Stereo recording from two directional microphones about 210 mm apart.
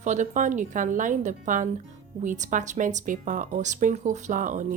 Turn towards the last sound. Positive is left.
turn(degrees=-35)  # may be behind; listen again after turning